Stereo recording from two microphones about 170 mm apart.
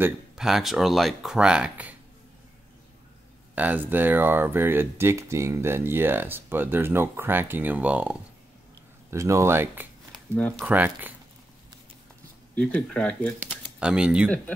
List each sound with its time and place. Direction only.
0.0 s speech: 5° right (ahead or behind)
3.5 s speech: 10° right (ahead or behind)
10.1 s a sound: 5° left (ahead or behind)
10.6 s speech: 10° right (ahead or behind)
12.5 s speech: 5° left (ahead or behind)
13.4 s speech: 5° right (ahead or behind)